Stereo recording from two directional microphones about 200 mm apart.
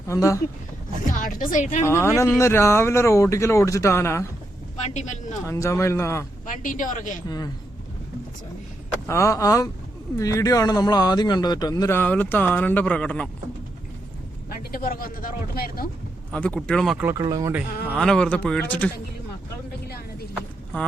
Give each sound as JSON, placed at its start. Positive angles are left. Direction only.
{"t": 0.1, "sound": "speech", "side_deg": 15}
{"t": 1.0, "sound": "speech", "side_deg": 40}
{"t": 1.8, "sound": "speech", "side_deg": 15}
{"t": 4.8, "sound": "a woman's voice", "side_deg": 35}
{"t": 5.5, "sound": "speech", "side_deg": 15}
{"t": 6.4, "sound": "a woman's voice", "side_deg": 40}
{"t": 7.3, "sound": "speech", "side_deg": 20}
{"t": 9.0, "sound": "speech", "side_deg": 15}
{"t": 14.5, "sound": "speech", "side_deg": 45}
{"t": 16.3, "sound": "speech", "side_deg": 5}
{"t": 17.1, "sound": "speech", "side_deg": -20}
{"t": 17.8, "sound": "speech", "side_deg": 0}